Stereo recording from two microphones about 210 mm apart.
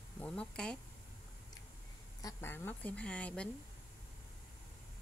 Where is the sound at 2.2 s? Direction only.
15° left (ahead or behind).